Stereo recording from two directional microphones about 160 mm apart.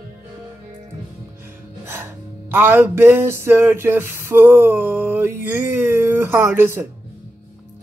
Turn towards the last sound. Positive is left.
turn(degrees=-15)  # may be behind; listen again after turning